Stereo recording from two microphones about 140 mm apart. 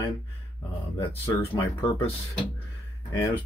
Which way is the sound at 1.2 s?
25° left (ahead or behind).